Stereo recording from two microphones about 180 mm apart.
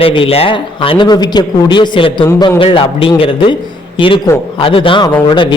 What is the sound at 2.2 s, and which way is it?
Speech, 15° left (ahead or behind).